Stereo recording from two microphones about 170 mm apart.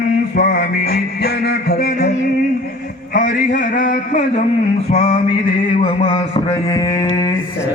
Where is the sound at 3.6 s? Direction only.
50° left (ahead or behind).